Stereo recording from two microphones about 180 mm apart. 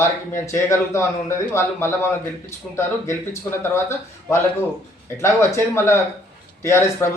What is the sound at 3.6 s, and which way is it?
A man's voice, 15° left (ahead or behind).